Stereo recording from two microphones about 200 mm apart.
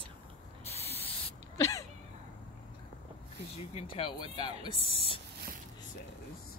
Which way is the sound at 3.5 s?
30° left (ahead or behind).